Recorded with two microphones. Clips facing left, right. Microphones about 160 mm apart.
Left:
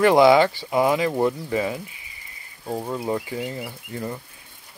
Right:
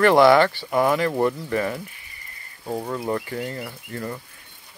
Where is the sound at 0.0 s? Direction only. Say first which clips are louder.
Even; 15° left (ahead or behind).